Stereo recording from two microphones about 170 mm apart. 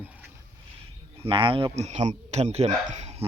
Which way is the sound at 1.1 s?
30° right (ahead or behind).